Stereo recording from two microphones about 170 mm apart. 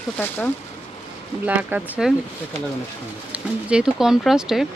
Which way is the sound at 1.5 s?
10° right (ahead or behind).